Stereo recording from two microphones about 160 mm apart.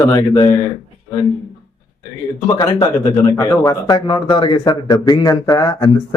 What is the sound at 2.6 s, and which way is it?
Speech, 20° left (ahead or behind).